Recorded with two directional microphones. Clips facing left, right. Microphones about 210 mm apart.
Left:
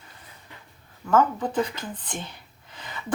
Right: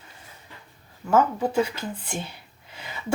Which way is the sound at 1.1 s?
10° right (ahead or behind).